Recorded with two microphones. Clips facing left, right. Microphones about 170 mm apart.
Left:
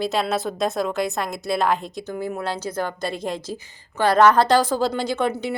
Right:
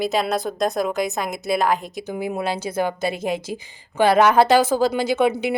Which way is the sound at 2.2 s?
10° right (ahead or behind).